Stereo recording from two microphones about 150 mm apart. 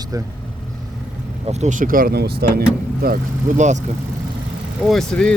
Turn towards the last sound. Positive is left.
turn(degrees=5)  # may be behind; listen again after turning